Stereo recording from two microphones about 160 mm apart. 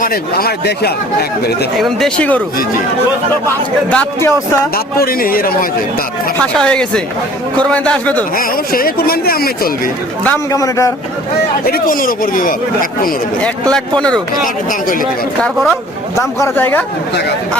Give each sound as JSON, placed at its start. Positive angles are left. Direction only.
{"t": 0.0, "sound": "speech", "side_deg": 70}
{"t": 1.8, "sound": "speech", "side_deg": 5}
{"t": 3.4, "sound": "a man's voice", "side_deg": 15}
{"t": 4.7, "sound": "speech", "side_deg": 70}
{"t": 6.4, "sound": "a man's voice", "side_deg": 5}
{"t": 8.4, "sound": "speech", "side_deg": 65}
{"t": 10.2, "sound": "a man's voice", "side_deg": 15}
{"t": 11.6, "sound": "speech", "side_deg": 65}
{"t": 14.0, "sound": "a man's voice", "side_deg": 5}
{"t": 14.4, "sound": "speech", "side_deg": 60}
{"t": 15.4, "sound": "speech", "side_deg": 5}
{"t": 16.1, "sound": "a man's voice", "side_deg": 15}